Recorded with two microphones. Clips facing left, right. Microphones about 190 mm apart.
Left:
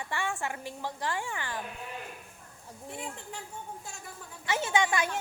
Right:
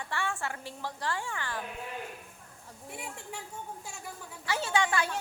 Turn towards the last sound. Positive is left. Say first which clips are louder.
# left 1 dB
turn(degrees=15)  # may be behind; listen again after turning